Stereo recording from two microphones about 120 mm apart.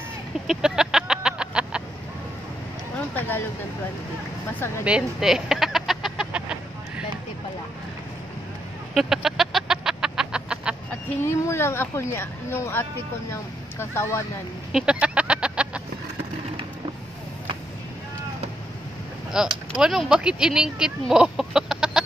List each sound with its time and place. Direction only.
0.5 s fowl: 5° right (ahead or behind)
3.2 s a sound: 15° left (ahead or behind)
4.8 s a sound: 5° right (ahead or behind)
8.9 s bird: 5° right (ahead or behind)
11.1 s speech: 20° left (ahead or behind)
14.7 s chicken: 5° right (ahead or behind)
19.3 s speech: 5° right (ahead or behind)